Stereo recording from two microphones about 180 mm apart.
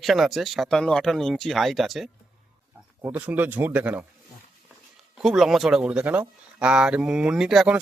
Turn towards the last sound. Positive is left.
turn(degrees=-5)  # may be behind; listen again after turning